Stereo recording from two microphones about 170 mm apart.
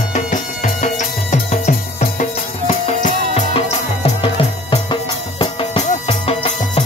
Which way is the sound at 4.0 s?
30° left (ahead or behind).